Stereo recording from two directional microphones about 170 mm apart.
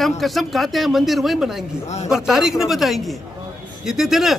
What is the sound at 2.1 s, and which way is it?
A man's voice, 5° right (ahead or behind).